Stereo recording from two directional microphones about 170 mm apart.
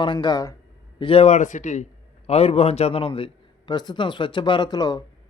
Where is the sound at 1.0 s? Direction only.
35° left (ahead or behind).